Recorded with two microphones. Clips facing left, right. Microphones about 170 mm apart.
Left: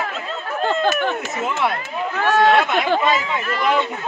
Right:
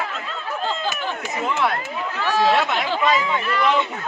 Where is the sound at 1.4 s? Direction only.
Centre (ahead or behind).